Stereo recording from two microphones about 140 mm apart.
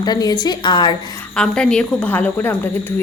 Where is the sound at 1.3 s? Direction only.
5° left (ahead or behind).